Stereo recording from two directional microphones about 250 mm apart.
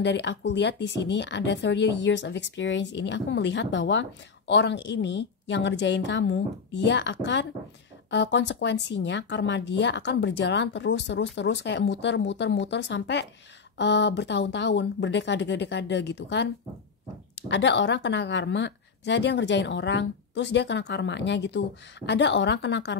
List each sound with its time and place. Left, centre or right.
0.0 s speech: left